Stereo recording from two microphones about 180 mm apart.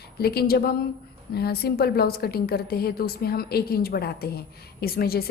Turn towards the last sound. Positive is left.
turn(degrees=60)  # may be behind; listen again after turning